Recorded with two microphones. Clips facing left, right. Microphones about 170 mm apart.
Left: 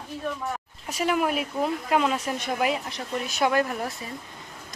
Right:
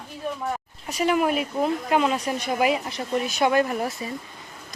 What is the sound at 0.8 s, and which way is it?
Speech, centre (ahead or behind).